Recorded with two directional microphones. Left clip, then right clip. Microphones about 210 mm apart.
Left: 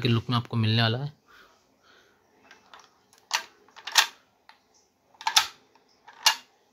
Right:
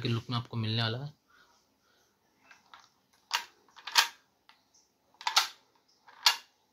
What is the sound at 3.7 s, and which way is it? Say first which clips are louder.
Camera: left 4 dB; 15° left (ahead or behind).